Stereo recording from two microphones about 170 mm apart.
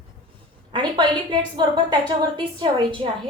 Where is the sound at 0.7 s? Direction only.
30° right (ahead or behind).